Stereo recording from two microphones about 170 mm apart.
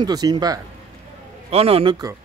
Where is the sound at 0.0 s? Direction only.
25° right (ahead or behind).